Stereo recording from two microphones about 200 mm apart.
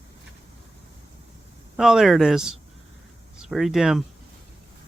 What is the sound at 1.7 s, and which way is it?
Speech, centre (ahead or behind).